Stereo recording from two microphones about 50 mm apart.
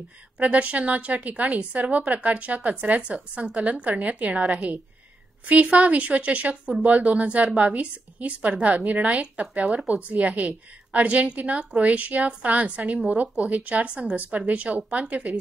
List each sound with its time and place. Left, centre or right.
0.4 s a woman's voice: right